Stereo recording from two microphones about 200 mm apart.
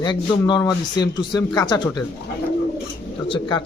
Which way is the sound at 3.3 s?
20° left (ahead or behind).